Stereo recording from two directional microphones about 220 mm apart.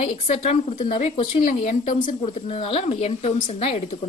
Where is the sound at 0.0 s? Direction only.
30° left (ahead or behind).